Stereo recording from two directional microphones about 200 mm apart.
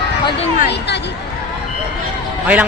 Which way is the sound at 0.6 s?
55° left (ahead or behind).